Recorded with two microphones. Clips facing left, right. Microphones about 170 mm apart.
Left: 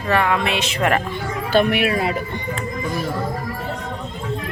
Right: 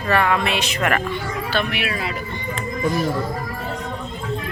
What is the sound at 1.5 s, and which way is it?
Speech, 50° left (ahead or behind).